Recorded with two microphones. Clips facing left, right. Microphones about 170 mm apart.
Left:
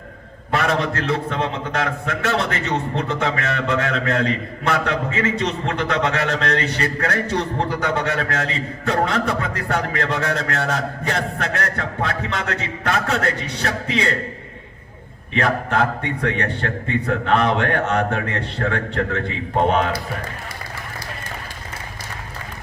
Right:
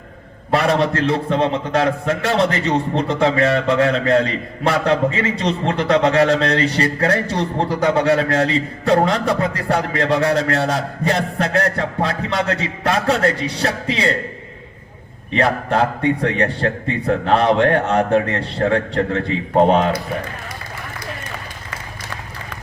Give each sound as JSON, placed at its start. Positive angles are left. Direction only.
{"t": 0.5, "sound": "a man's voice", "side_deg": -35}
{"t": 15.3, "sound": "a man's voice", "side_deg": -35}